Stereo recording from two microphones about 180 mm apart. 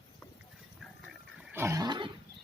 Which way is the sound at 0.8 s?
Centre (ahead or behind).